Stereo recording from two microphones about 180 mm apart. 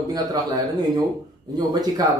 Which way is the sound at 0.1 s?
20° right (ahead or behind).